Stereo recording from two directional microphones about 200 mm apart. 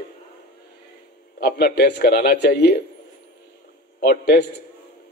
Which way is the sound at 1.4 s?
55° left (ahead or behind).